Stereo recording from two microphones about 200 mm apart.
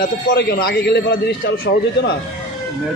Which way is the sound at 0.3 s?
50° left (ahead or behind).